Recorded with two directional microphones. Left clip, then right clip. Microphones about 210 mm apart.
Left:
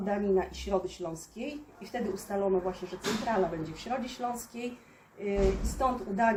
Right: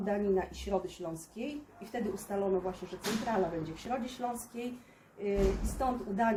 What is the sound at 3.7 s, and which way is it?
Speech, 10° left (ahead or behind).